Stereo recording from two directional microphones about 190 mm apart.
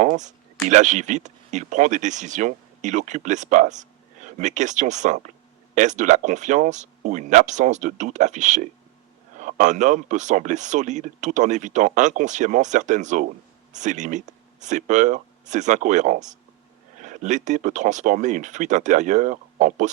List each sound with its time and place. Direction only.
0.0 s speech: 40° right (ahead or behind)